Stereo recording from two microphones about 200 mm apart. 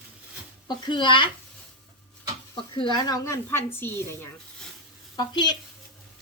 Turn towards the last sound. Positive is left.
turn(degrees=20)  # may be behind; listen again after turning